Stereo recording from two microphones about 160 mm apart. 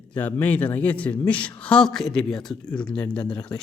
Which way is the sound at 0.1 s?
10° left (ahead or behind).